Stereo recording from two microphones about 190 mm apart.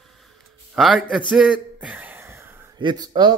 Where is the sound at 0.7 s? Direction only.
Centre (ahead or behind).